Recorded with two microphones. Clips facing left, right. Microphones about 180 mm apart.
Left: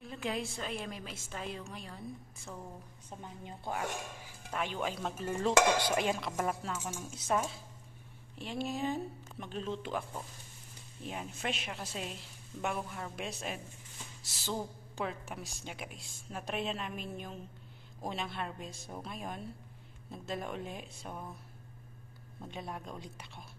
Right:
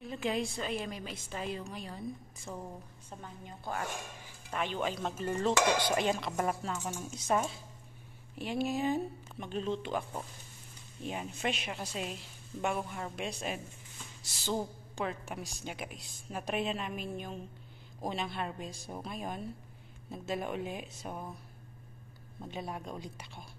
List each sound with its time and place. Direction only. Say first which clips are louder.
0.0 s dishes: right 3 dB; centre (ahead or behind)
3.2 s a woman's voice: left 1 dB; 25° left (ahead or behind)
4.5 s dishes: right 2 dB; 5° left (ahead or behind)
11.1 s dishes: right 3 dB; centre (ahead or behind)
22.4 s dishes: right 2 dB; 5° right (ahead or behind)